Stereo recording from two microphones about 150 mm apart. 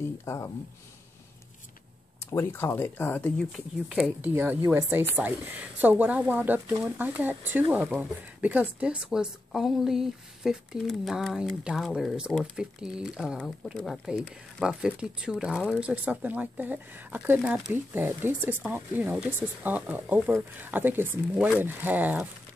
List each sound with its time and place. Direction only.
0.2 s speech: 20° left (ahead or behind)
2.3 s speech: 15° left (ahead or behind); by 4.1 s centre (ahead or behind)
4.2 s speech: 15° right (ahead or behind)
17.4 s speech: centre (ahead or behind)
17.9 s speech: 15° right (ahead or behind)